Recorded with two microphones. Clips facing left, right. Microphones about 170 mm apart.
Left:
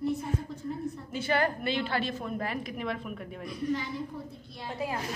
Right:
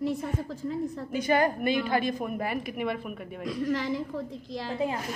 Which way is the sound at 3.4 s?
90° right.